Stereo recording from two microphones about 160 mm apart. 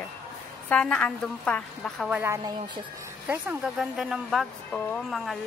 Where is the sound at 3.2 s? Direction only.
10° right (ahead or behind).